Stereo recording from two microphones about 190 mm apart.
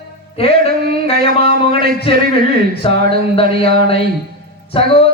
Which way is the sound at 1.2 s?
55° right (ahead or behind).